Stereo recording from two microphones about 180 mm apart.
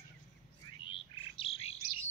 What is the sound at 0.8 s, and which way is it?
Bird, 30° left (ahead or behind).